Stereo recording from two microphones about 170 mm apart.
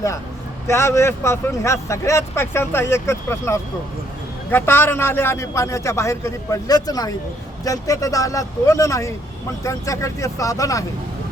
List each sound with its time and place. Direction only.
0.7 s speech: 15° left (ahead or behind)